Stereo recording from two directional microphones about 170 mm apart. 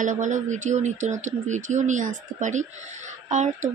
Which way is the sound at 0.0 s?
50° right (ahead or behind).